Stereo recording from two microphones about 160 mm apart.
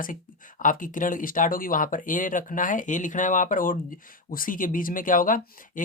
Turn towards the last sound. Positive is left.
turn(degrees=60)  # may be behind; listen again after turning